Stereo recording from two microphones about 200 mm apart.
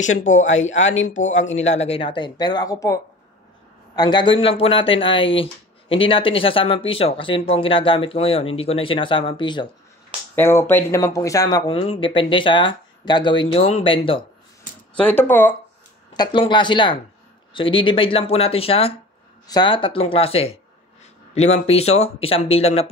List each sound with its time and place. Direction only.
0.0 s speech: 40° left (ahead or behind); by 9.7 s 25° left (ahead or behind)
10.3 s speech: 10° left (ahead or behind); by 14.2 s 25° left (ahead or behind)
15.0 s speech: 10° left (ahead or behind)
16.1 s speech: 25° left (ahead or behind)